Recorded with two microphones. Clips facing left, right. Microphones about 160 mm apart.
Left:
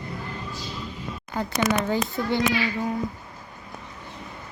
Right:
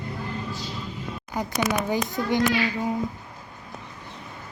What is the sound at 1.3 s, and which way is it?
A child's voice, 15° right (ahead or behind).